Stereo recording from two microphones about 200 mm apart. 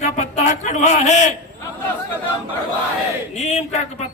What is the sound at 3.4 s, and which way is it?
Speech, 35° left (ahead or behind).